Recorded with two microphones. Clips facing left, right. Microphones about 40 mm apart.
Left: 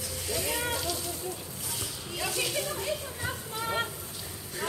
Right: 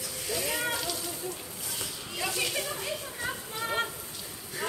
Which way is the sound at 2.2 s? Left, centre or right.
Centre.